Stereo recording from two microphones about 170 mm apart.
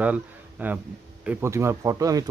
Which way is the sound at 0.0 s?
10° right (ahead or behind).